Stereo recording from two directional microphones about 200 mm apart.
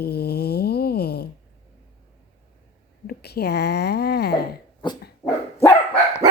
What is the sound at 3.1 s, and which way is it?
Speech, 55° left (ahead or behind).